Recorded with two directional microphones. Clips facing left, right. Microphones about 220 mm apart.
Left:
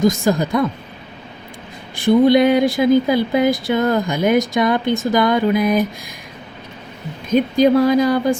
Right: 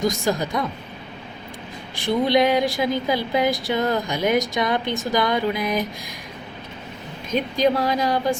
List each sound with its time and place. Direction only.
0.0 s speech: 50° left (ahead or behind)
2.0 s speech: 50° left (ahead or behind)
7.6 s speech: 55° left (ahead or behind)